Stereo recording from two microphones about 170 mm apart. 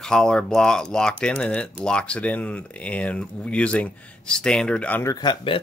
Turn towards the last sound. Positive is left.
turn(degrees=30)  # may be behind; listen again after turning